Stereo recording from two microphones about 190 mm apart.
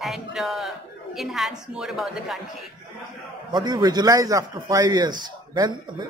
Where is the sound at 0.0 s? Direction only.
Centre (ahead or behind).